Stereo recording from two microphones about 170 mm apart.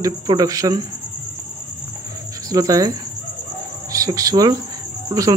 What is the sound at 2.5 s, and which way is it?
Speech, 20° right (ahead or behind).